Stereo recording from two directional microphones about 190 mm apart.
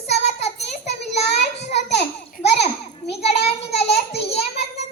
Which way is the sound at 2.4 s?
35° left (ahead or behind).